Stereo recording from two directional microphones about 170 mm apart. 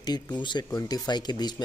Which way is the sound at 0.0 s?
25° left (ahead or behind).